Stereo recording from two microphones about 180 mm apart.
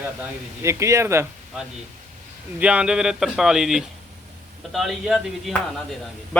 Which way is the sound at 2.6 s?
5° right (ahead or behind).